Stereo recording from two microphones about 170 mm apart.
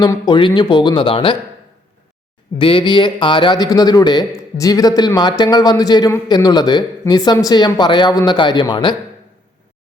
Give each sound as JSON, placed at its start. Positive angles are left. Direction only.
{"t": 0.0, "sound": "a man's voice", "side_deg": 25}
{"t": 2.6, "sound": "a man's voice", "side_deg": 30}